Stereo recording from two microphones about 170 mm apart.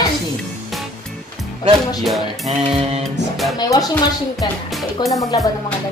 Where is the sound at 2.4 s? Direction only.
35° right (ahead or behind).